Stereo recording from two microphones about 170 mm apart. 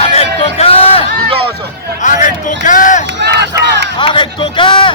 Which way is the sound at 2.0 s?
50° left (ahead or behind).